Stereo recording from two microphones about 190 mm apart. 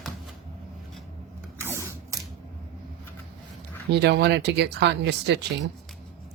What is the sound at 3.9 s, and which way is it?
Speech, 60° right (ahead or behind).